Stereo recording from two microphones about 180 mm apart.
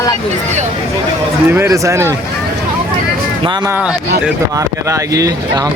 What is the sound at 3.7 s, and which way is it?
A man's voice, 10° right (ahead or behind).